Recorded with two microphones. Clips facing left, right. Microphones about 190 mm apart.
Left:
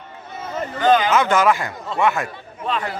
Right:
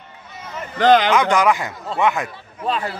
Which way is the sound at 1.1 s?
15° right (ahead or behind).